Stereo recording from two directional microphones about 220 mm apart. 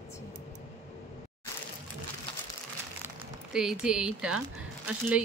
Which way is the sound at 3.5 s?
Centre (ahead or behind).